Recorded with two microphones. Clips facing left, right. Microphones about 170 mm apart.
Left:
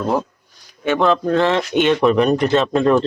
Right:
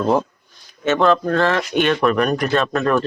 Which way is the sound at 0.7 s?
10° left (ahead or behind).